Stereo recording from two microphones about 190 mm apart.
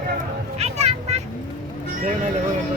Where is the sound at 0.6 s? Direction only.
35° right (ahead or behind).